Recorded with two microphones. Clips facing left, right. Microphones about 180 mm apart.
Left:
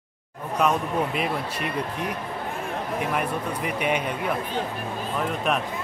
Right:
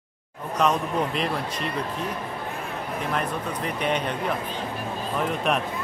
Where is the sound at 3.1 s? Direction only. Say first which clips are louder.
Left 1 dB; 10° left (ahead or behind).